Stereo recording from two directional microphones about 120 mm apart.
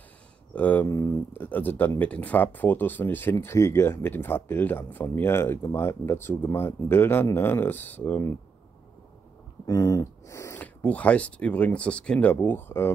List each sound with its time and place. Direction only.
0.6 s speech: 15° left (ahead or behind)
0.8 s speech: 30° left (ahead or behind)
1.3 s speech: 15° left (ahead or behind)
9.7 s speech: 30° left (ahead or behind)
10.6 s speech: 15° left (ahead or behind)